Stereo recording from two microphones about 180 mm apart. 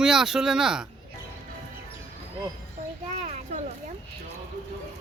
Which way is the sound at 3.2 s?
35° right (ahead or behind).